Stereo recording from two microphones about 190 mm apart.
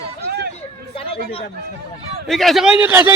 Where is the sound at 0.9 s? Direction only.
30° left (ahead or behind).